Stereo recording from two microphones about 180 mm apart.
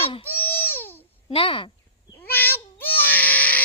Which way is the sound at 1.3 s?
30° left (ahead or behind).